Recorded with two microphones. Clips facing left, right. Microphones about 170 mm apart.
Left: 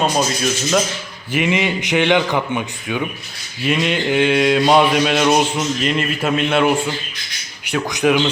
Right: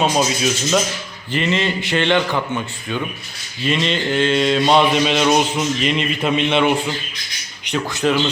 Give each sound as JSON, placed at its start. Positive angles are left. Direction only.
{"t": 0.0, "sound": "a man's voice", "side_deg": -5}
{"t": 1.3, "sound": "a man's voice", "side_deg": 10}